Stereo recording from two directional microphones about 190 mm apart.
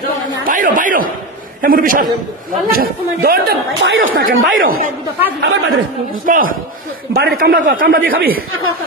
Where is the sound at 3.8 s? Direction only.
90° right.